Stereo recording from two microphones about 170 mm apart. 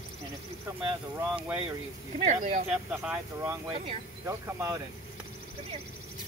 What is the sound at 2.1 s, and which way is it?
Speech, 45° right (ahead or behind).